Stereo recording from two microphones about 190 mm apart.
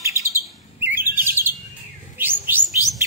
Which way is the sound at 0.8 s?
10° right (ahead or behind).